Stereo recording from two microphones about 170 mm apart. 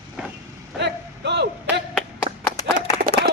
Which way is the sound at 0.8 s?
90° right.